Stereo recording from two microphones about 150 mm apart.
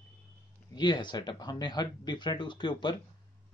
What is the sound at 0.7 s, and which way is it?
Speech, 30° left (ahead or behind).